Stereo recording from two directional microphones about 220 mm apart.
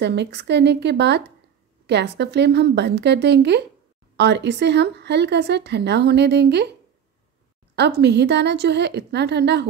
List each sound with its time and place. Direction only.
0.0 s speech: 50° right (ahead or behind)
7.7 s speech: 50° right (ahead or behind)